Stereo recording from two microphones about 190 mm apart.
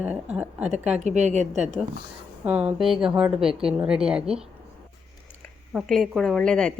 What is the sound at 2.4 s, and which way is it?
A woman's voice, 10° right (ahead or behind).